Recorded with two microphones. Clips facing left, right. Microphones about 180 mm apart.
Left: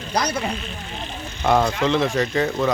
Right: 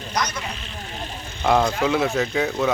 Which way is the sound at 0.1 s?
30° left (ahead or behind).